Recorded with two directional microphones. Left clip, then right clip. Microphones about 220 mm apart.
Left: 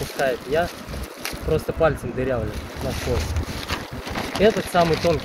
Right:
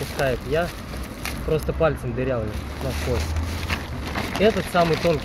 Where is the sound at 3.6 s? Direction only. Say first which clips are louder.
Right 1 dB; 5° left (ahead or behind).